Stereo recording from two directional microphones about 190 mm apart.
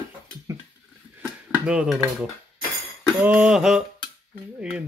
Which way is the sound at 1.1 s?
10° right (ahead or behind).